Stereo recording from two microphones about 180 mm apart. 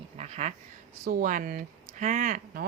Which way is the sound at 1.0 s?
50° right (ahead or behind).